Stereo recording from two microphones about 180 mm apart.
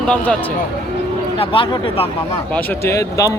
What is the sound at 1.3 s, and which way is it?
Speech, 30° left (ahead or behind).